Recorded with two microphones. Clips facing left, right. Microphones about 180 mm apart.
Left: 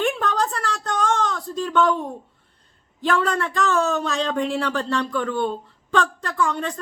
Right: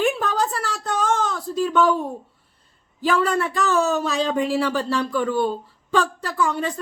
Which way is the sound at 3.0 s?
5° right (ahead or behind).